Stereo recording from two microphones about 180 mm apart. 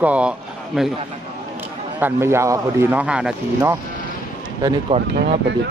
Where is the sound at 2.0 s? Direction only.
15° right (ahead or behind).